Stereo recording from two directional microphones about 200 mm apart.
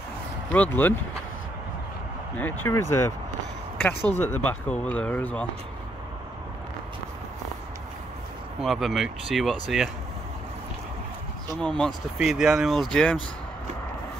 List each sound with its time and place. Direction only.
0.5 s speech: 10° left (ahead or behind)
2.3 s speech: 10° left (ahead or behind)
4.1 s speech: 10° left (ahead or behind)
8.5 s speech: centre (ahead or behind)
11.6 s speech: 5° left (ahead or behind)